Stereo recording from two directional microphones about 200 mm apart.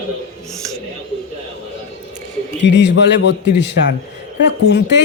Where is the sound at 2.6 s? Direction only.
60° left (ahead or behind).